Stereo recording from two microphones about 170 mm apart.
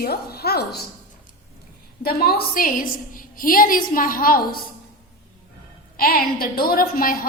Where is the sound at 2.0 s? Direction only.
65° left (ahead or behind).